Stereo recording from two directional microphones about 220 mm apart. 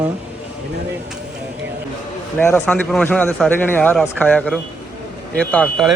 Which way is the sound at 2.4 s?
10° left (ahead or behind).